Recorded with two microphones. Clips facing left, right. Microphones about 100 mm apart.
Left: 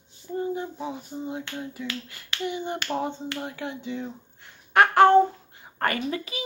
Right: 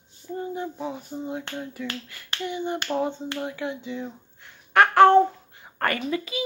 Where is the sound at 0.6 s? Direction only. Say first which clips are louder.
Right 1 dB; 20° left (ahead or behind).